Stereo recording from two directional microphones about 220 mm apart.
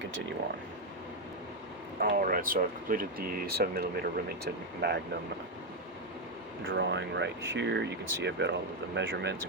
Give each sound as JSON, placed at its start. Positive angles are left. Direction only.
{"t": 2.0, "sound": "speech", "side_deg": -40}
{"t": 6.7, "sound": "speech", "side_deg": -55}